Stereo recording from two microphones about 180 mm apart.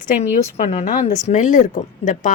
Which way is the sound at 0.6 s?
40° left (ahead or behind).